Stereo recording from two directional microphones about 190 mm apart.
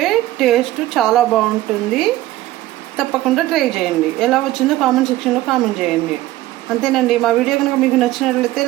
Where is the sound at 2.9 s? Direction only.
Centre (ahead or behind).